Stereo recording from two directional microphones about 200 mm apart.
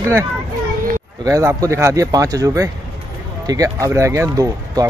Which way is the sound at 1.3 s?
15° right (ahead or behind).